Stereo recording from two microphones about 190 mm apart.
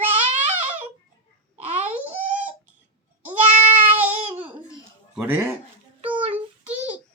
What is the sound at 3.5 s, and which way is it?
Goat, 30° right (ahead or behind).